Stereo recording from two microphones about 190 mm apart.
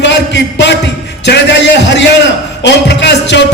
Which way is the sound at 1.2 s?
65° left (ahead or behind).